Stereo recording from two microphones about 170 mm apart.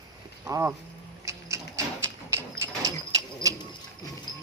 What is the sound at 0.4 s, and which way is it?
Speech, 15° right (ahead or behind).